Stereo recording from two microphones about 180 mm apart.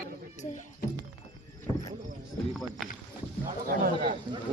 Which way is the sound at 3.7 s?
55° right (ahead or behind).